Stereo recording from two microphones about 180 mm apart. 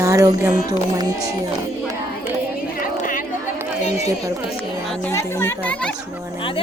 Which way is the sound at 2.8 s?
45° left (ahead or behind).